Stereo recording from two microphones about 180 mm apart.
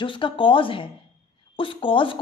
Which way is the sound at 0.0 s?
25° left (ahead or behind).